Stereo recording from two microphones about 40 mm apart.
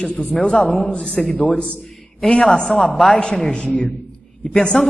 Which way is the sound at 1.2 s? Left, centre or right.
Left.